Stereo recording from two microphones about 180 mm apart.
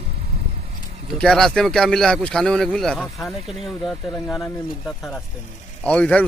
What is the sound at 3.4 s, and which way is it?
Speech, 35° right (ahead or behind).